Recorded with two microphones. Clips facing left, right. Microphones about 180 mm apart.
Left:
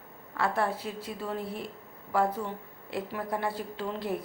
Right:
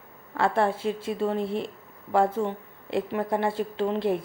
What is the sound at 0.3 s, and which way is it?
A woman's voice, 25° right (ahead or behind).